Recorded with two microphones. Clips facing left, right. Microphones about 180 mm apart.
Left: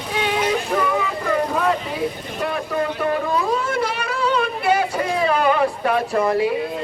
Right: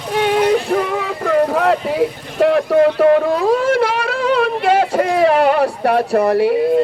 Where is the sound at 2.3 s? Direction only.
75° right (ahead or behind).